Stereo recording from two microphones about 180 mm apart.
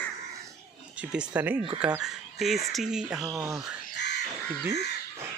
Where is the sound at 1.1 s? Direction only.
10° right (ahead or behind).